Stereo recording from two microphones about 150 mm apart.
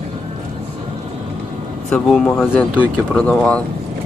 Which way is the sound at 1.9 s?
5° left (ahead or behind).